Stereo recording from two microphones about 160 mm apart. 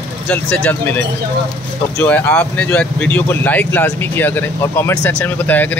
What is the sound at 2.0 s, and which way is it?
Speech, 10° left (ahead or behind).